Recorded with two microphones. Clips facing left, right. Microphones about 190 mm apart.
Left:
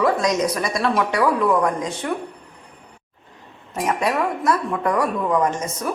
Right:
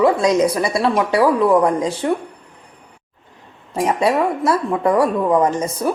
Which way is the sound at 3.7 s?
30° right (ahead or behind).